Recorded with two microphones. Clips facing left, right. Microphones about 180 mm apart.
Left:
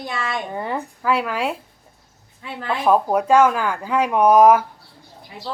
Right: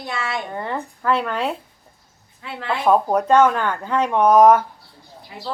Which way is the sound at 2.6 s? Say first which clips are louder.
Even; centre (ahead or behind).